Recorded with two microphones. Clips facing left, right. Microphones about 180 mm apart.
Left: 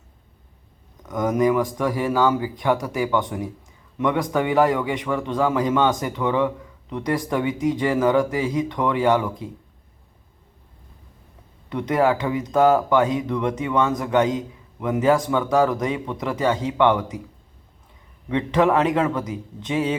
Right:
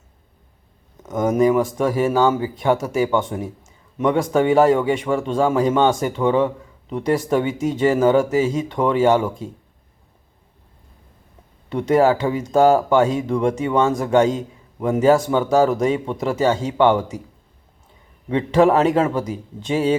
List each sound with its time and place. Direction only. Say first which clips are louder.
1.0 s a man's voice: right 3 dB; 25° right (ahead or behind)
11.9 s a man's voice: right 4 dB; 25° right (ahead or behind)
18.3 s a man's voice: right 4 dB; 30° right (ahead or behind)